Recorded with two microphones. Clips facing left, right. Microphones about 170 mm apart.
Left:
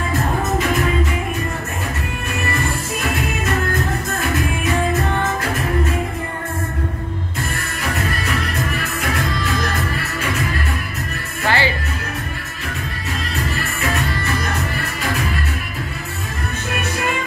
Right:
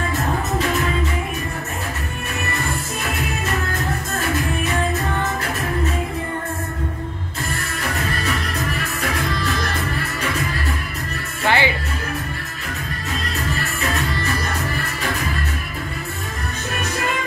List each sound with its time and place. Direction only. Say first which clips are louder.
11.4 s music: even; 20° right (ahead or behind)